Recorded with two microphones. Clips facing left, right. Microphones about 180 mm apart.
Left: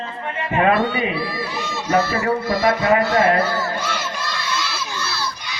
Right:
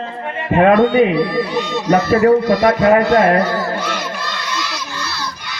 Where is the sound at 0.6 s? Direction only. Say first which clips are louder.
Right 8 dB; 50° right (ahead or behind).